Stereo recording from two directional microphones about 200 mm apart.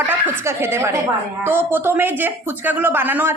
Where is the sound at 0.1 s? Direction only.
10° right (ahead or behind).